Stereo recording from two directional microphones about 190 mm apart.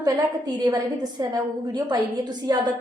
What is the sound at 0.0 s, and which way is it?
A woman's voice, 20° right (ahead or behind).